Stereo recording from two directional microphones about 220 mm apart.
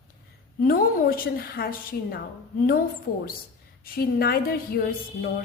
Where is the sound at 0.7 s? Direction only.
40° left (ahead or behind).